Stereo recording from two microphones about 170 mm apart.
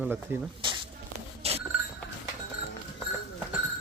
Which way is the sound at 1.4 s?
35° right (ahead or behind).